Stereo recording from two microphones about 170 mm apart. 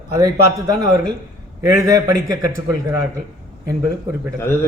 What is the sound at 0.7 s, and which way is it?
A man's voice, 25° right (ahead or behind).